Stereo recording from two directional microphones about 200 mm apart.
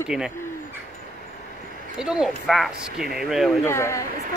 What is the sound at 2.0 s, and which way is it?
Speech, 5° right (ahead or behind).